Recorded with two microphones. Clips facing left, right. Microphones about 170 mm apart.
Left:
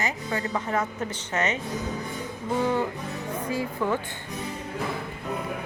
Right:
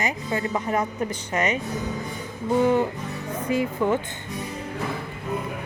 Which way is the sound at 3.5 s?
20° right (ahead or behind).